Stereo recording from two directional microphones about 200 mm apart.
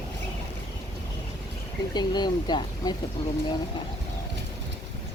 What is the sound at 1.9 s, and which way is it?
Speech, 20° left (ahead or behind).